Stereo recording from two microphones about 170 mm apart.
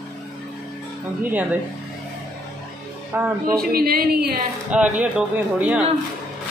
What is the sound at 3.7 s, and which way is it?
Speech, 60° right (ahead or behind).